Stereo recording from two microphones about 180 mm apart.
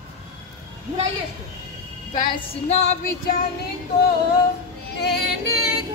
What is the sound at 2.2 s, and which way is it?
Music, 30° left (ahead or behind).